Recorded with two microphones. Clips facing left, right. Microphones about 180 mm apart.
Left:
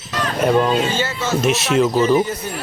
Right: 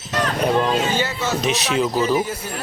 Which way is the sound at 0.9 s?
15° right (ahead or behind).